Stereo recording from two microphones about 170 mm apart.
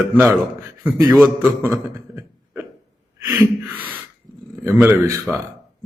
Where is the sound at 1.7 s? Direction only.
15° right (ahead or behind).